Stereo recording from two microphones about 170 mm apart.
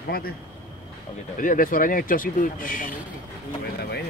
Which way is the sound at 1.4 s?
50° left (ahead or behind).